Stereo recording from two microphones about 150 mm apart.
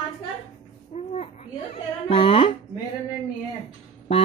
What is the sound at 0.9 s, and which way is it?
Speech, 50° left (ahead or behind).